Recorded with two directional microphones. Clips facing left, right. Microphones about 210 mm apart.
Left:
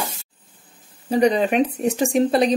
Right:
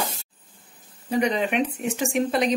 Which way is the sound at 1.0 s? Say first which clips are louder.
Left 5 dB; 35° left (ahead or behind).